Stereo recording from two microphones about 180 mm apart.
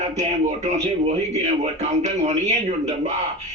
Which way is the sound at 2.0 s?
40° right (ahead or behind).